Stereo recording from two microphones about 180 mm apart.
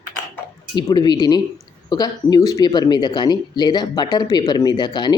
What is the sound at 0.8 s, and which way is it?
Speech, 25° left (ahead or behind).